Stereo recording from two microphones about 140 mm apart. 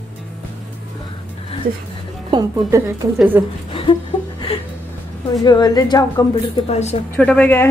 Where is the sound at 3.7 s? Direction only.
40° left (ahead or behind).